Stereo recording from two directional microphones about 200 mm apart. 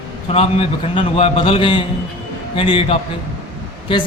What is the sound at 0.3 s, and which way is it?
A man's voice, 30° left (ahead or behind).